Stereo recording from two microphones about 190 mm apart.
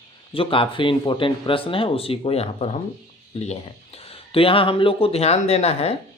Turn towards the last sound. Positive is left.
turn(degrees=30)  # may be behind; listen again after turning